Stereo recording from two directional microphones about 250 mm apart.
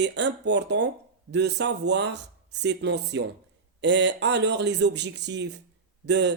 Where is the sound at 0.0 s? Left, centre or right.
Right.